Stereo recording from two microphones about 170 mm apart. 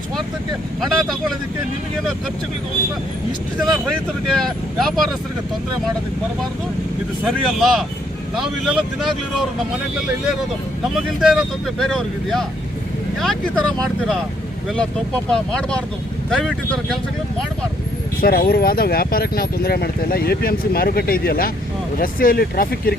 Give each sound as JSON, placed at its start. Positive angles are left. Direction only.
{"t": 0.8, "sound": "speech", "side_deg": 0}
{"t": 3.7, "sound": "speech", "side_deg": 0}
{"t": 7.3, "sound": "speech", "side_deg": 0}
{"t": 11.2, "sound": "speech", "side_deg": 0}
{"t": 15.3, "sound": "speech", "side_deg": 5}
{"t": 18.2, "sound": "speech", "side_deg": 60}